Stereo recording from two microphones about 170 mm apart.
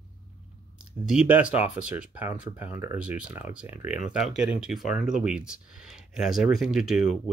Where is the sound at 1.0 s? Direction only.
5° right (ahead or behind).